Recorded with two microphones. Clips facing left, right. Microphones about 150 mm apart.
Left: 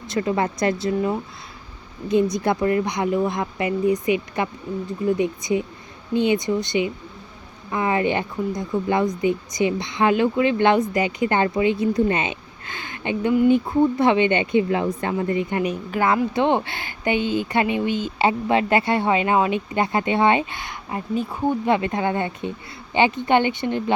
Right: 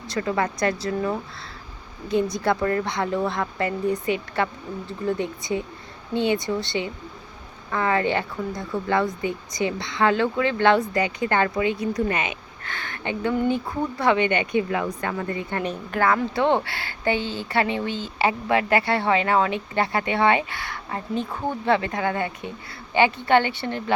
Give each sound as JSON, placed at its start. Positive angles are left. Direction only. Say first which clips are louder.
{"t": 0.1, "sound": "a woman's voice", "louder": "left 2 dB", "side_deg": 20}
{"t": 13.7, "sound": "speech", "louder": "left 5 dB", "side_deg": 20}